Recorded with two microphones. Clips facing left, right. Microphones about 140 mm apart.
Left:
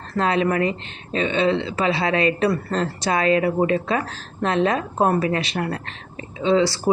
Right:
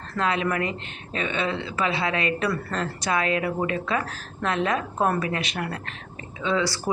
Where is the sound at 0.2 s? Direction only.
30° left (ahead or behind).